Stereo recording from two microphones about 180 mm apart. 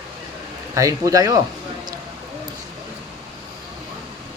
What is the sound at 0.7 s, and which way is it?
Speech, 20° right (ahead or behind).